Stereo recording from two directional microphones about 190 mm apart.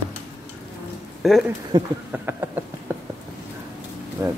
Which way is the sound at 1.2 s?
Centre (ahead or behind).